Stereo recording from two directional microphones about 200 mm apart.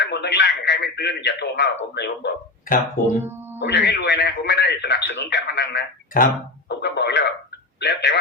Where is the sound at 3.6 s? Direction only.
60° left (ahead or behind).